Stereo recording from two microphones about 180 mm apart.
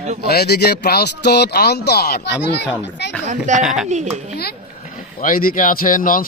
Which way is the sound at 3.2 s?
40° right (ahead or behind).